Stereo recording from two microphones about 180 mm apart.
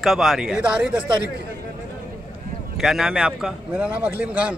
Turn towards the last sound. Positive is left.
turn(degrees=-5)  # may be behind; listen again after turning